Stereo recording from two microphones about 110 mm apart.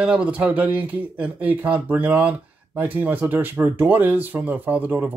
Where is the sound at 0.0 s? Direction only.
10° right (ahead or behind).